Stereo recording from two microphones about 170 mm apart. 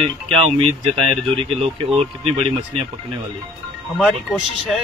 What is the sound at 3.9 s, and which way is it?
Speech, centre (ahead or behind).